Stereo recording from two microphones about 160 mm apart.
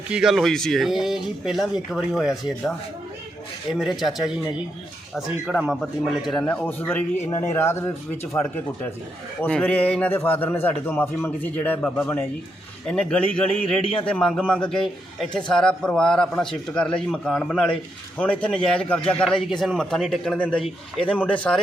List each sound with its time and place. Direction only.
0.1 s a man's voice: 5° right (ahead or behind)
5.1 s a man's voice: centre (ahead or behind)
12.9 s a man's voice: 5° left (ahead or behind)